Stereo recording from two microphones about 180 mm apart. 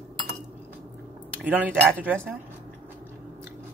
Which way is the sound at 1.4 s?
10° right (ahead or behind).